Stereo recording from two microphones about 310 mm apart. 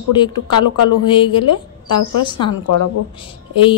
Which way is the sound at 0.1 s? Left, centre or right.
Centre.